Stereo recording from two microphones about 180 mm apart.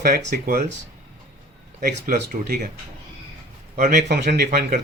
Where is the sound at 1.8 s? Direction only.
50° right (ahead or behind).